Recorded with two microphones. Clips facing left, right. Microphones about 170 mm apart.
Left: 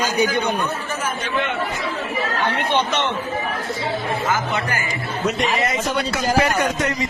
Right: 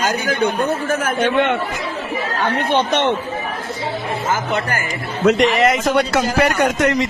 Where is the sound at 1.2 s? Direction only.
85° right.